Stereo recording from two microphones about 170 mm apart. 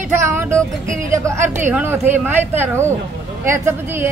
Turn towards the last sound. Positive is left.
turn(degrees=-15)  # may be behind; listen again after turning